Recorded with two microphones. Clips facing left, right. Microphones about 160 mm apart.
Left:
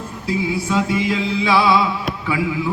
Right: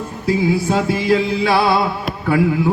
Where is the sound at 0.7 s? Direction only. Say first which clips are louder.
Even; 45° right (ahead or behind).